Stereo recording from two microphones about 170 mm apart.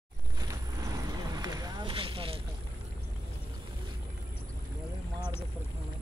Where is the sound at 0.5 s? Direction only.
20° right (ahead or behind).